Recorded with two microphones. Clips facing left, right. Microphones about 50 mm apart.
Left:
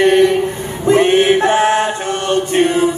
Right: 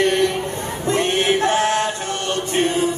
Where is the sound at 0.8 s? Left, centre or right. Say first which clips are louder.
Left 9 dB; left.